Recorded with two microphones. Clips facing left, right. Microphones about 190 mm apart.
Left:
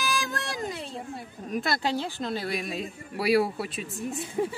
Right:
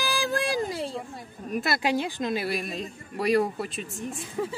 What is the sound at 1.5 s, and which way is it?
Speech, 5° right (ahead or behind).